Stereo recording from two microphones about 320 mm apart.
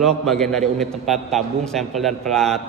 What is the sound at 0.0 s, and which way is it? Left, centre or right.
A man's voice, centre.